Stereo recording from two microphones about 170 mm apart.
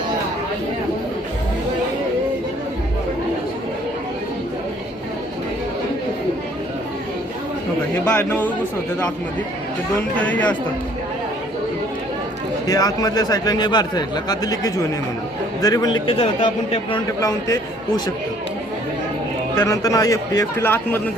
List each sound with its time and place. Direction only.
8.1 s a man's voice: 10° left (ahead or behind)
10.2 s a man's voice: 10° left (ahead or behind)
12.6 s a man's voice: 20° left (ahead or behind)
16.1 s speech: 35° left (ahead or behind)
17.2 s a man's voice: 20° left (ahead or behind)
19.5 s a man's voice: 20° left (ahead or behind)